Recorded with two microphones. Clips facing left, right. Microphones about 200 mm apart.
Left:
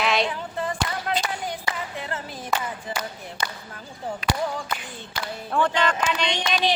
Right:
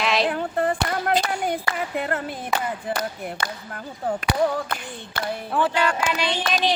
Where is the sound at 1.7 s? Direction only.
60° right (ahead or behind).